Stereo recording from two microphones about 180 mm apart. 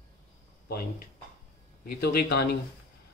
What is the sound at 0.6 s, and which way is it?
Speech, 60° left (ahead or behind).